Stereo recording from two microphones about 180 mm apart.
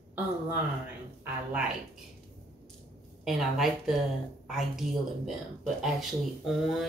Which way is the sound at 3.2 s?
Centre (ahead or behind).